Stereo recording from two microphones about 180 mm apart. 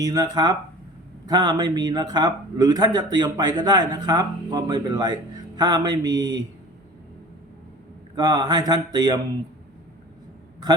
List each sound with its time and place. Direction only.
0.0 s a man's voice: 20° right (ahead or behind)
8.1 s a man's voice: 20° right (ahead or behind)